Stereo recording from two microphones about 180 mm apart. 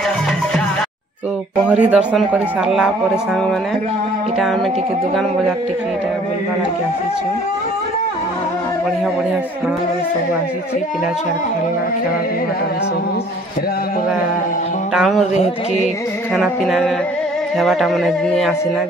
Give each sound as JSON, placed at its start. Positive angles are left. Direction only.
{"t": 1.7, "sound": "speech", "side_deg": -5}
{"t": 15.0, "sound": "speech", "side_deg": 0}
{"t": 15.3, "sound": "music", "side_deg": 40}
{"t": 16.3, "sound": "speech", "side_deg": 0}